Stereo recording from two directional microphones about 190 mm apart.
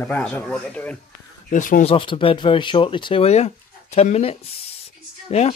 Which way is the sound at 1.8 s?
30° left (ahead or behind).